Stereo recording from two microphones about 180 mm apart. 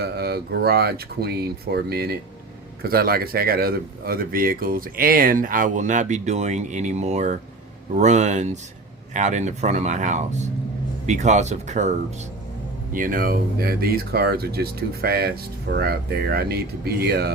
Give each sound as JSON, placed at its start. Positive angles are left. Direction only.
{"t": 0.0, "sound": "speech", "side_deg": -60}